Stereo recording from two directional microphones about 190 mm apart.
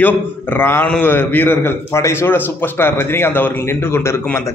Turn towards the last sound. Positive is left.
turn(degrees=15)  # may be behind; listen again after turning